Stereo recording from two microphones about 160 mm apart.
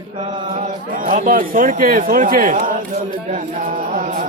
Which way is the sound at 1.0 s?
50° right (ahead or behind).